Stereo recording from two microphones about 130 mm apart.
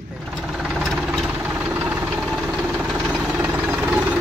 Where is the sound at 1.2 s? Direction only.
15° right (ahead or behind).